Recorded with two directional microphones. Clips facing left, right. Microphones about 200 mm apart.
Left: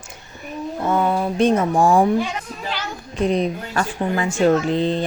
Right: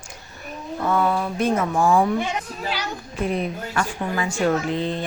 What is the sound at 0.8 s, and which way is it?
Speech, 20° left (ahead or behind).